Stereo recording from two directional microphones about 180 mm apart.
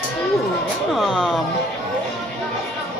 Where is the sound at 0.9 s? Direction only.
5° right (ahead or behind).